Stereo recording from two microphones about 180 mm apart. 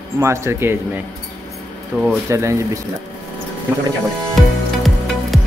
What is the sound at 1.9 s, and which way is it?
Speech, 5° right (ahead or behind).